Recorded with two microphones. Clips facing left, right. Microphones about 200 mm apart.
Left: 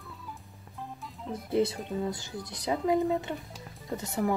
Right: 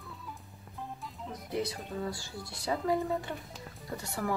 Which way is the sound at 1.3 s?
25° left (ahead or behind).